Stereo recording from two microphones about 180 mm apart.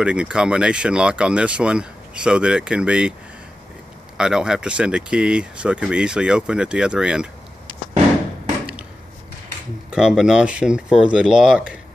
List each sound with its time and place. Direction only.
0.0 s speech: 5° right (ahead or behind)
4.2 s speech: 5° right (ahead or behind)
9.8 s speech: 5° right (ahead or behind)